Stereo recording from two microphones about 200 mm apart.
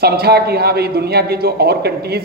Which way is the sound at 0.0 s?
50° right (ahead or behind).